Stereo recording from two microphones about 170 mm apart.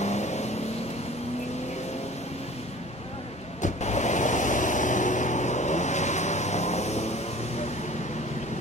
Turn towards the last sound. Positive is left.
turn(degrees=40)  # may be behind; listen again after turning